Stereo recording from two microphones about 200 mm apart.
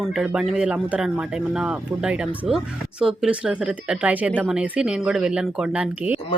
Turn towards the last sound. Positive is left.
turn(degrees=-10)  # may be behind; listen again after turning